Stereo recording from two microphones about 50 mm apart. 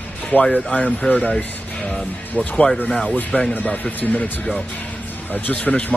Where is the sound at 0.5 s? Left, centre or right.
Left.